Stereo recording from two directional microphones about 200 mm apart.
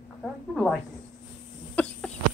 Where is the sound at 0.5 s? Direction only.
Centre (ahead or behind).